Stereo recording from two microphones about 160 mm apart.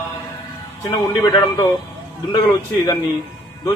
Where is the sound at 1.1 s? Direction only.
20° left (ahead or behind).